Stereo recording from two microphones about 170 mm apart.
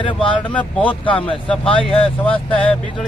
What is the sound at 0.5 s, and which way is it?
Speech, 10° left (ahead or behind).